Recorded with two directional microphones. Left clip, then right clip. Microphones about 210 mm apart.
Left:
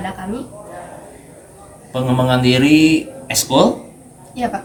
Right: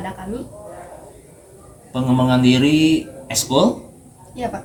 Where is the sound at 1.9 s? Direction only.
25° left (ahead or behind).